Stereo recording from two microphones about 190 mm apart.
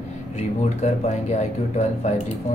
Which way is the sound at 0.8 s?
35° left (ahead or behind).